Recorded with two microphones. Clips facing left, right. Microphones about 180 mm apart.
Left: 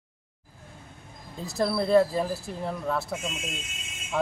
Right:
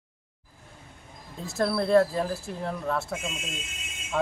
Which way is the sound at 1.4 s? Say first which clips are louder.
Even; centre (ahead or behind).